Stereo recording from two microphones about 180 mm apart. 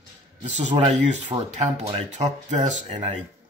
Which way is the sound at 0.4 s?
40° right (ahead or behind).